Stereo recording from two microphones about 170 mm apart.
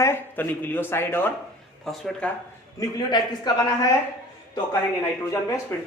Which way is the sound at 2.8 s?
25° left (ahead or behind).